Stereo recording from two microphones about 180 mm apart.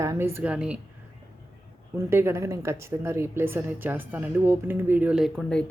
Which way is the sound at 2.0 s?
15° right (ahead or behind).